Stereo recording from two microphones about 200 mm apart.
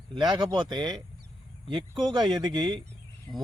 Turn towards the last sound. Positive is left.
turn(degrees=-20)  # may be behind; listen again after turning